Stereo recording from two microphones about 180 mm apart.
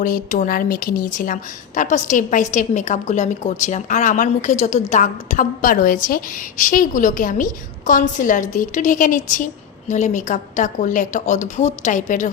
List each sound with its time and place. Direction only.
0.0 s a woman's voice: 45° left (ahead or behind)